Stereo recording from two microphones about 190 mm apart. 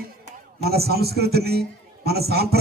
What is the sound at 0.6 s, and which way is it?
A man's voice, 55° right (ahead or behind).